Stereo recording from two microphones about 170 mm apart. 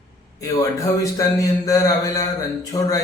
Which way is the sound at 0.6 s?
20° left (ahead or behind).